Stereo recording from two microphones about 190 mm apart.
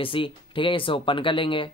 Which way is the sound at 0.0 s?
25° left (ahead or behind).